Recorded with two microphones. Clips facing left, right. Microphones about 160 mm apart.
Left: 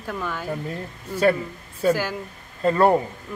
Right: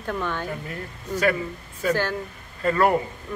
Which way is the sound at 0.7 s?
30° left (ahead or behind).